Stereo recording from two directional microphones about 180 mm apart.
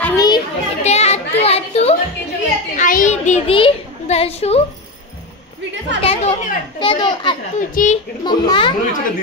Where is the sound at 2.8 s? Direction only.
45° left (ahead or behind).